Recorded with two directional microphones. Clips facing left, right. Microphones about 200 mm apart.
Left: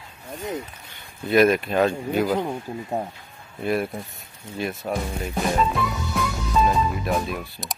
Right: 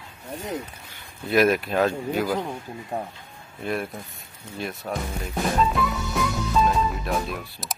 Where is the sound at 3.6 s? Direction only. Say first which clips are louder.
Left 4 dB; 5° left (ahead or behind).